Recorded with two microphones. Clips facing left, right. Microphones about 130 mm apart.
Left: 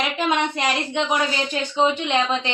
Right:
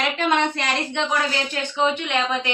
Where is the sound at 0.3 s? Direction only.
15° left (ahead or behind).